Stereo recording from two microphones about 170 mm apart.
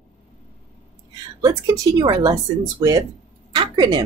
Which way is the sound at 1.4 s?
20° right (ahead or behind).